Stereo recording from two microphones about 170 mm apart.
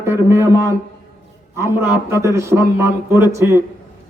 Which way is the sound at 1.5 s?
15° right (ahead or behind).